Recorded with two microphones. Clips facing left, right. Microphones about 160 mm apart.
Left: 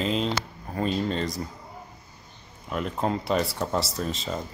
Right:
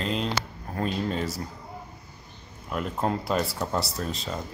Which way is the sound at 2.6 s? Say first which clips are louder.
Even; centre (ahead or behind).